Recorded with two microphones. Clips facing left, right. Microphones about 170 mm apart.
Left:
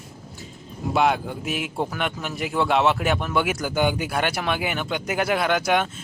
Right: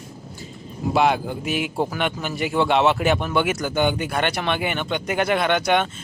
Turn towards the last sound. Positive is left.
turn(degrees=5)  # may be behind; listen again after turning